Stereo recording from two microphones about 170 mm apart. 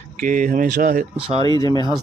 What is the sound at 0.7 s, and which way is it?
Speech, 60° right (ahead or behind).